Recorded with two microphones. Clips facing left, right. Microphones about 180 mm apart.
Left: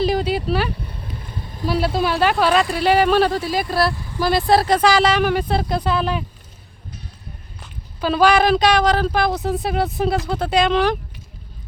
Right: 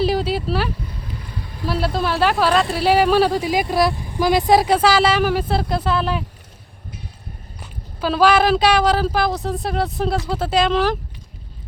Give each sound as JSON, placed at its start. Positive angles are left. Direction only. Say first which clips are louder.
{"t": 0.0, "sound": "vehicle", "louder": "even", "side_deg": 0}
{"t": 1.6, "sound": "speech", "louder": "left 2 dB", "side_deg": 0}
{"t": 7.6, "sound": "speech", "louder": "even", "side_deg": 0}